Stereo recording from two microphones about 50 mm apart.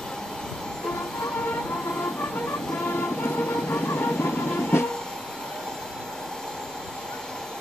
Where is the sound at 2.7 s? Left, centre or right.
Left.